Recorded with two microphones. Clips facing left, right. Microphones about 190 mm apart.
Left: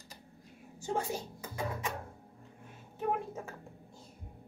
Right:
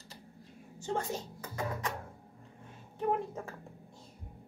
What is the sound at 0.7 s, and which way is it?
Speech, 10° left (ahead or behind).